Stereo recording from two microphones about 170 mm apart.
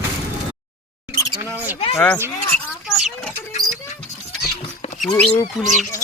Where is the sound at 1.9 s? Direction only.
10° left (ahead or behind).